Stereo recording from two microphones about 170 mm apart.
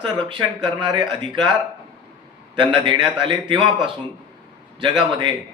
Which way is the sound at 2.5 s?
30° right (ahead or behind).